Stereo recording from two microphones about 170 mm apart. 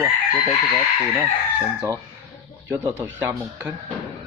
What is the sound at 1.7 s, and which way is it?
Speech, 10° right (ahead or behind).